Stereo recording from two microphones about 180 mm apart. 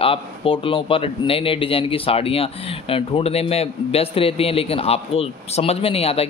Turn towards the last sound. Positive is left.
turn(degrees=35)  # may be behind; listen again after turning